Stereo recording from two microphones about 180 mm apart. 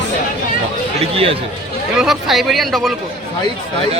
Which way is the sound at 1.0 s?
30° right (ahead or behind).